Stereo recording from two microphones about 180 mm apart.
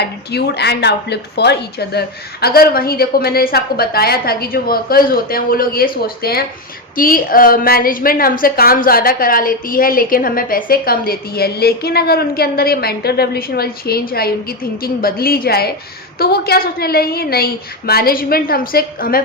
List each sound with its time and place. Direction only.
0.0 s a woman's voice: 65° left (ahead or behind)